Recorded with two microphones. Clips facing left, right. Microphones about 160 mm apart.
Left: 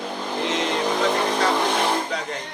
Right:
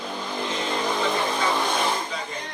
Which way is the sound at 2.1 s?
75° left (ahead or behind).